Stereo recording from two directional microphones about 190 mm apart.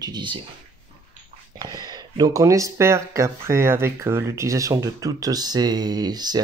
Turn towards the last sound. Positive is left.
turn(degrees=-20)  # may be behind; listen again after turning